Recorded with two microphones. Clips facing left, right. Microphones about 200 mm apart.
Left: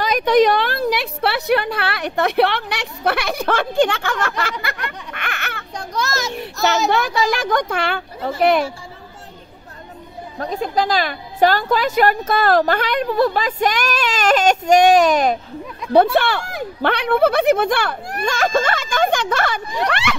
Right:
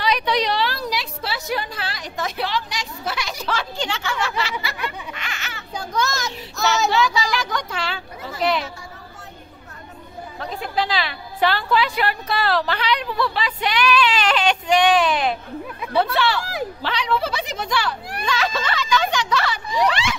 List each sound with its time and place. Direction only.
0.0 s a woman's voice: 45° left (ahead or behind)
5.8 s a child's voice: centre (ahead or behind)
6.9 s a woman's voice: 55° left (ahead or behind)
10.4 s a woman's voice: 45° left (ahead or behind); by 20.2 s 60° left (ahead or behind)